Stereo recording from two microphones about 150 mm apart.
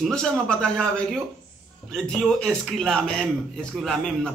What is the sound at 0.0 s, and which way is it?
A man's voice, 5° left (ahead or behind).